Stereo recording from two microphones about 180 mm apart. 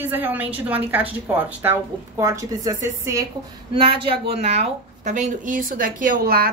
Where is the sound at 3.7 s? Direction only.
30° right (ahead or behind).